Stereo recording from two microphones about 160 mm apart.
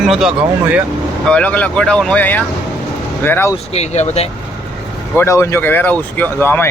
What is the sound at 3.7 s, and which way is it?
Speech, 45° left (ahead or behind).